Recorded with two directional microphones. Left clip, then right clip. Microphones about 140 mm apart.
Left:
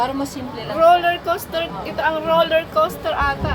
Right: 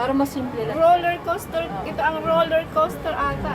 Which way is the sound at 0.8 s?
40° left (ahead or behind).